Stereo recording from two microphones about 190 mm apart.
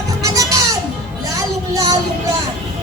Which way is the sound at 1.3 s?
20° right (ahead or behind).